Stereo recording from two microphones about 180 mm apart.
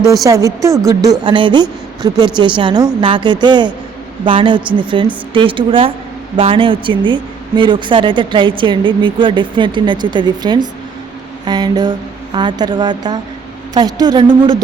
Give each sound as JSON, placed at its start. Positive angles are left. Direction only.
{"t": 0.3, "sound": "a woman's voice", "side_deg": -20}